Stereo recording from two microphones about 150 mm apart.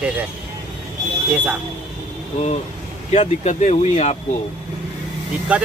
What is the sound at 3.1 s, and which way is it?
Speech, 50° left (ahead or behind).